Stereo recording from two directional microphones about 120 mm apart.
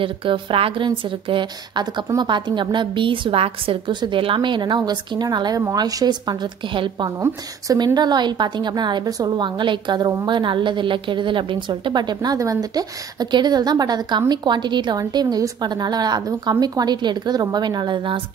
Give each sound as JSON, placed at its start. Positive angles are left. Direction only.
{"t": 0.0, "sound": "a woman's voice", "side_deg": -45}
{"t": 7.2, "sound": "a woman's voice", "side_deg": -30}